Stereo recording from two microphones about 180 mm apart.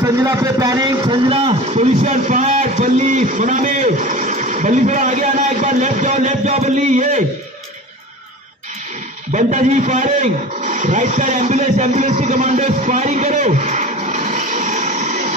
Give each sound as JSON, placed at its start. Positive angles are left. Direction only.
{"t": 0.0, "sound": "a man's voice", "side_deg": -20}
{"t": 9.3, "sound": "a man's voice", "side_deg": -45}